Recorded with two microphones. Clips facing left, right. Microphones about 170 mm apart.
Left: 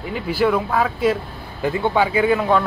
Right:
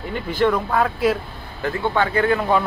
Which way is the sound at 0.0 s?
5° left (ahead or behind).